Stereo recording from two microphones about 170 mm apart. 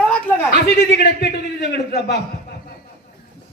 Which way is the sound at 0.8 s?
70° left (ahead or behind).